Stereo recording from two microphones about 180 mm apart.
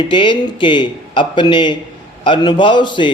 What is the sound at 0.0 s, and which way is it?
A man's voice, 25° left (ahead or behind).